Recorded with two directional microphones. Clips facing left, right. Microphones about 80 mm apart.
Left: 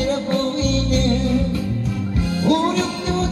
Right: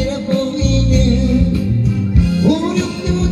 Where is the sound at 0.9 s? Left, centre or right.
Left.